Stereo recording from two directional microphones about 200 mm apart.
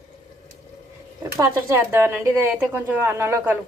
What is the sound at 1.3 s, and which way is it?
Speech, 15° right (ahead or behind).